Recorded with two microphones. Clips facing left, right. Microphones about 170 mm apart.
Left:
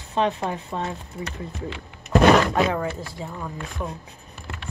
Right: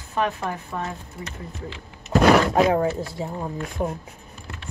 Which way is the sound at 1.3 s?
65° left (ahead or behind).